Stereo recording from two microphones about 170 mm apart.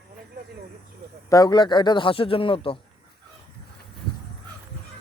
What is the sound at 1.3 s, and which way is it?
Speech, 25° left (ahead or behind).